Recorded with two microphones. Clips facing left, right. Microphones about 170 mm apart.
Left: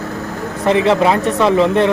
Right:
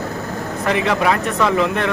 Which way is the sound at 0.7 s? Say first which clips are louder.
Left 5 dB; 30° left (ahead or behind).